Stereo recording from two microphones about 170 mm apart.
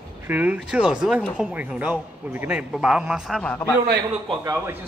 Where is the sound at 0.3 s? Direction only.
10° right (ahead or behind); by 3.7 s 10° left (ahead or behind).